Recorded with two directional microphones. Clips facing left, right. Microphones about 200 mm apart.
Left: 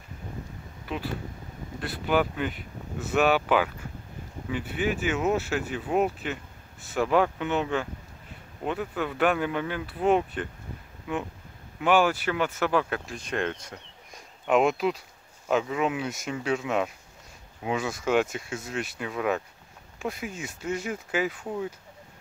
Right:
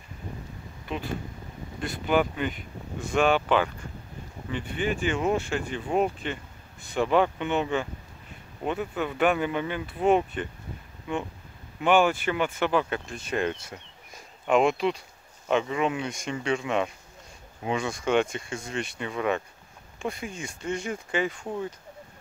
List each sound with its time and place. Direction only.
0.9 s speech: 5° left (ahead or behind)